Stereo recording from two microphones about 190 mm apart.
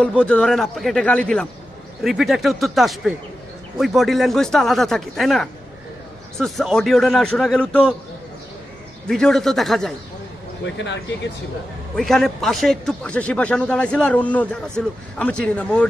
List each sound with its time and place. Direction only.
0.2 s speech: 5° left (ahead or behind)
9.0 s speech: centre (ahead or behind)
10.6 s speech: 70° left (ahead or behind)
12.0 s speech: centre (ahead or behind)